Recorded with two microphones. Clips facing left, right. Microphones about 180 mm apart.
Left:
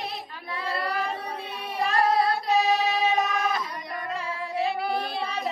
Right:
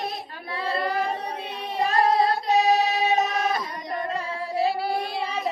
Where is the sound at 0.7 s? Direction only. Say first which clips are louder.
Right 4 dB; 25° right (ahead or behind).